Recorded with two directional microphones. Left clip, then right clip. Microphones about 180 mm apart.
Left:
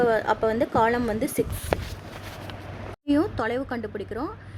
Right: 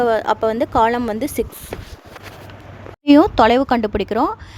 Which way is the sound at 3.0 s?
40° right (ahead or behind).